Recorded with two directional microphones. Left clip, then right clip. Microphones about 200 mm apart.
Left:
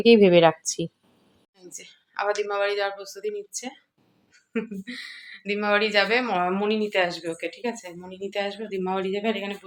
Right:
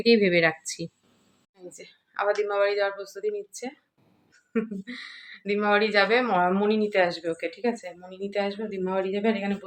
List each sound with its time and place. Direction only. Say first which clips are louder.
0.0 s a woman's voice: left 5 dB; 20° left (ahead or behind)
1.5 s speech: even; centre (ahead or behind)